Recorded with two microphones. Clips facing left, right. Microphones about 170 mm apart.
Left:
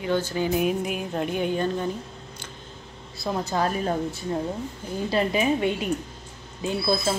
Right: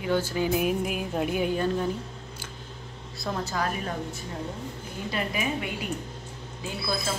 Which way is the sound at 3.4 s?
30° left (ahead or behind).